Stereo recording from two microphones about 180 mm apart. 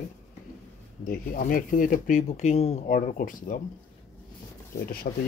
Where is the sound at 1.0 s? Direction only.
50° left (ahead or behind).